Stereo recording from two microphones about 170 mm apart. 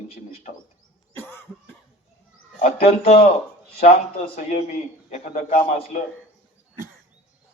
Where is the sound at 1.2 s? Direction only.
15° left (ahead or behind).